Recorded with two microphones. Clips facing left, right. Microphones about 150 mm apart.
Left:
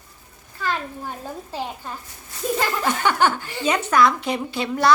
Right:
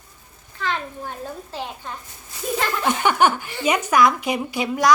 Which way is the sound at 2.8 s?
15° right (ahead or behind).